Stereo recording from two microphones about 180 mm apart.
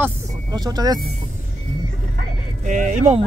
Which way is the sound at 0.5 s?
20° right (ahead or behind).